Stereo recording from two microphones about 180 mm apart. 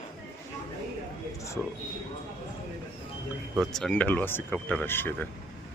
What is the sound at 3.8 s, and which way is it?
Speech, 5° left (ahead or behind).